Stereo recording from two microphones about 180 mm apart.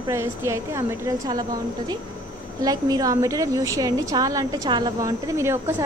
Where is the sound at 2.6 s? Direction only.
20° right (ahead or behind).